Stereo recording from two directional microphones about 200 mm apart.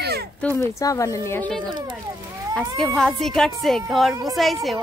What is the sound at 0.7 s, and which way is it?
Speech, 15° left (ahead or behind).